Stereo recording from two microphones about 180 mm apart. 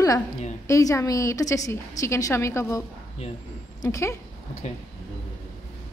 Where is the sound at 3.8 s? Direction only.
15° left (ahead or behind).